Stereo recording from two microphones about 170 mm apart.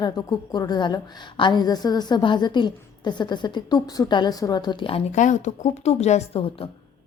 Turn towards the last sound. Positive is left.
turn(degrees=35)  # may be behind; listen again after turning